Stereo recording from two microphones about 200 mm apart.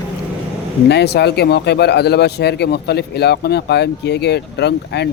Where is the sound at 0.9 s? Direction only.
55° left (ahead or behind).